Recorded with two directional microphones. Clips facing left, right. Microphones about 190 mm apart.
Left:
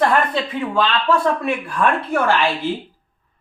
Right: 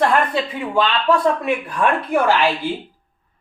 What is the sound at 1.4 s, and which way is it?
Speech, 20° right (ahead or behind).